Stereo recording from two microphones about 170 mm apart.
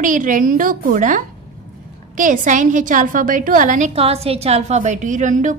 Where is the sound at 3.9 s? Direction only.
35° right (ahead or behind).